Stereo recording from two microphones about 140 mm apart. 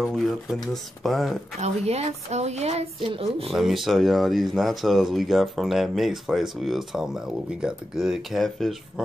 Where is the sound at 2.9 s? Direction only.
40° right (ahead or behind).